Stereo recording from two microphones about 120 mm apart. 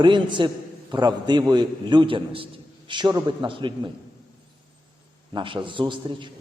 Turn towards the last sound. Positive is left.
turn(degrees=-40)  # may be behind; listen again after turning